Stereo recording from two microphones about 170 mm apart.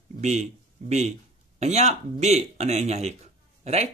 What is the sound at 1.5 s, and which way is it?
Speech, 40° right (ahead or behind).